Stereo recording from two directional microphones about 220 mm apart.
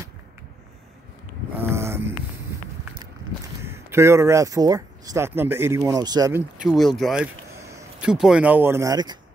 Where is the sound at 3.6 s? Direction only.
10° right (ahead or behind).